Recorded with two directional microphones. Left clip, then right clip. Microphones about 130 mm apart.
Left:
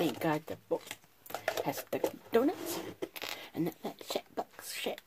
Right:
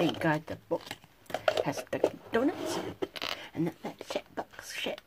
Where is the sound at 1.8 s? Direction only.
30° left (ahead or behind).